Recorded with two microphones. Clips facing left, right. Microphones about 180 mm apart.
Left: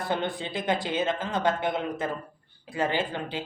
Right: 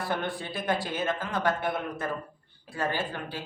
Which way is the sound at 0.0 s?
20° left (ahead or behind).